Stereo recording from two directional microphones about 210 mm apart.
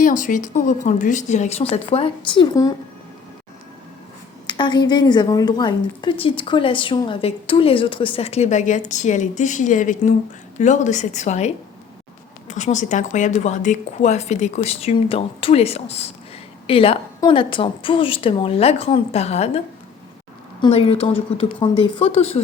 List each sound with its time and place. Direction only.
0.0 s a woman's voice: 40° left (ahead or behind); by 2.7 s 20° left (ahead or behind)
4.4 s a woman's voice: 20° left (ahead or behind)